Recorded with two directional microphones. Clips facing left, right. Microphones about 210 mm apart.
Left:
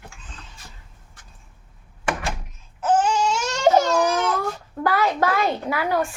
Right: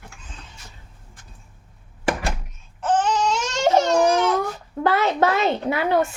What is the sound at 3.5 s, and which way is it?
Baby cry, 25° right (ahead or behind).